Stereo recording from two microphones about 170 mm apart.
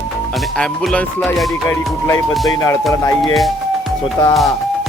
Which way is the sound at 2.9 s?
20° left (ahead or behind).